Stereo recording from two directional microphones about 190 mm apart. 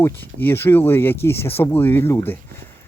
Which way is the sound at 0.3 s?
10° left (ahead or behind).